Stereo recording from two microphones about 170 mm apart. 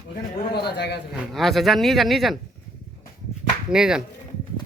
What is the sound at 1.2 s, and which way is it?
Speech, centre (ahead or behind).